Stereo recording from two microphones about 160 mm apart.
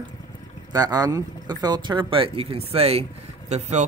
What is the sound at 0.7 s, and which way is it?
Speech, 25° right (ahead or behind).